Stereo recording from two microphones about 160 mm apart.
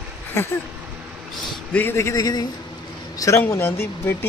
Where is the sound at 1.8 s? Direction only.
15° left (ahead or behind).